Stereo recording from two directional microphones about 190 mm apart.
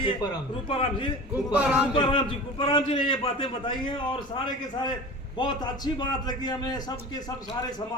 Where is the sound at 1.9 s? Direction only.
25° left (ahead or behind).